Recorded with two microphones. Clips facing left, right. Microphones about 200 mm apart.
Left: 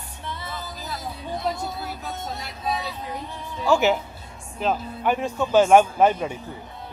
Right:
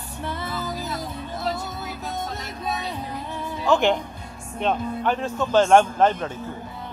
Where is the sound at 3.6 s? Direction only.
5° left (ahead or behind).